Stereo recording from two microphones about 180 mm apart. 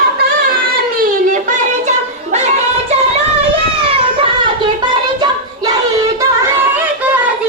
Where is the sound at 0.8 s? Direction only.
55° right (ahead or behind).